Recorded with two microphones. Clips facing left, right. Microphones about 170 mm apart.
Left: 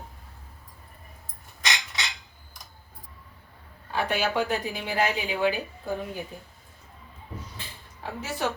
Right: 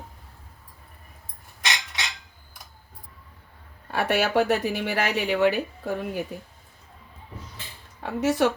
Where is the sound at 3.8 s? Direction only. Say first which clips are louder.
Right 3 dB; 70° right (ahead or behind).